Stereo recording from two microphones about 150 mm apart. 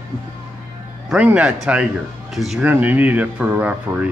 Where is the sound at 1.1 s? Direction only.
5° right (ahead or behind).